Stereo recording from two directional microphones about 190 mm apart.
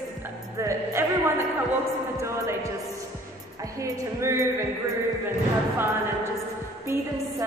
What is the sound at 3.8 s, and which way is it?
Speech, 15° right (ahead or behind).